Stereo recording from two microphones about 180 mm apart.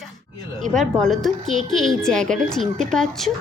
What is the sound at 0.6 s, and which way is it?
Speech, centre (ahead or behind).